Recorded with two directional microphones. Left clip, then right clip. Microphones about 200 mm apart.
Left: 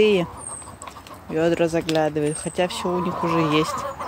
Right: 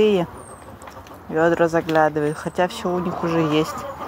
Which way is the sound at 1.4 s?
15° left (ahead or behind).